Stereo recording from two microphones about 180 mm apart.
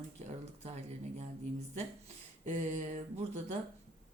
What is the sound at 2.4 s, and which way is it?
Speech, 40° right (ahead or behind).